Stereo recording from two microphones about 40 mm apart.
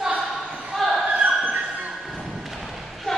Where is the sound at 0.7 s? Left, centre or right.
Centre.